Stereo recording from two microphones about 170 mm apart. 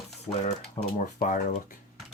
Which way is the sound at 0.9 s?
50° left (ahead or behind).